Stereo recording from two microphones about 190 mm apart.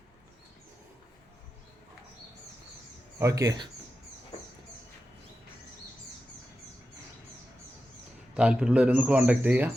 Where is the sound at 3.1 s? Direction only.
15° right (ahead or behind).